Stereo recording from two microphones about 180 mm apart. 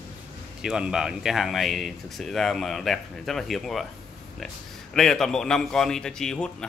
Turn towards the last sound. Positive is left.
turn(degrees=5)  # may be behind; listen again after turning